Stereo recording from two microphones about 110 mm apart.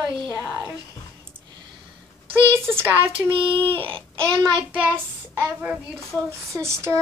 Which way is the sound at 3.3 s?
55° right (ahead or behind).